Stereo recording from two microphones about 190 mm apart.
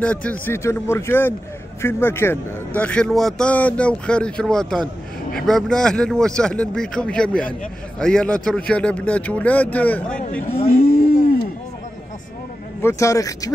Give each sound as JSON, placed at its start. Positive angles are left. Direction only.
{"t": 0.0, "sound": "a man's voice", "side_deg": 5}
{"t": 10.6, "sound": "speech", "side_deg": 55}
{"t": 12.8, "sound": "speech", "side_deg": 15}